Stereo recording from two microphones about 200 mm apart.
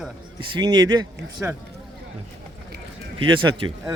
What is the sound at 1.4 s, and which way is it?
Speech, 5° right (ahead or behind).